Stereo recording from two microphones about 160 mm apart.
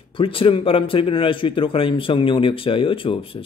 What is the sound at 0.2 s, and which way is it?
A man's voice, 35° left (ahead or behind).